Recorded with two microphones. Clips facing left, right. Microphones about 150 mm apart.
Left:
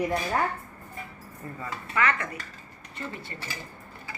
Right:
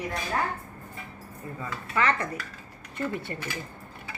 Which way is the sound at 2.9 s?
55° right (ahead or behind).